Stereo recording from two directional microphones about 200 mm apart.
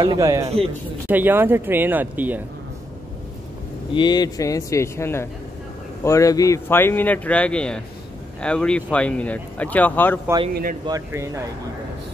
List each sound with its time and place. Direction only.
0.0 s speech: 20° right (ahead or behind)
3.9 s speech: 20° left (ahead or behind)
10.5 s a man's voice: 45° right (ahead or behind)
10.9 s speech: 15° right (ahead or behind)